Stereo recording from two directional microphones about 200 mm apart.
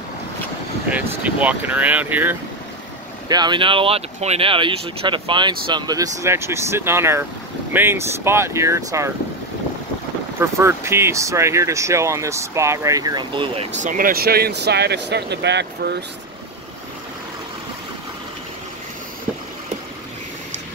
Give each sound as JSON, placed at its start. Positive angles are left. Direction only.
{"t": 0.8, "sound": "speech", "side_deg": -5}
{"t": 3.3, "sound": "speech", "side_deg": -20}
{"t": 10.4, "sound": "speech", "side_deg": -15}
{"t": 13.7, "sound": "speech", "side_deg": -40}